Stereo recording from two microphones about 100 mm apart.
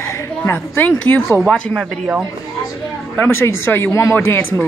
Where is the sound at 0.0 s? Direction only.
30° left (ahead or behind); by 1.6 s 10° left (ahead or behind).